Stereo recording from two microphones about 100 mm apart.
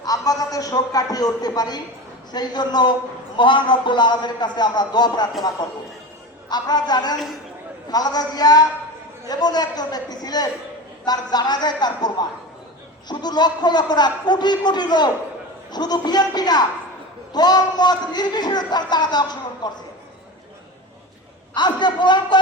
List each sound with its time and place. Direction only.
0.0 s a man's voice: 35° left (ahead or behind)
21.5 s a man's voice: 50° left (ahead or behind)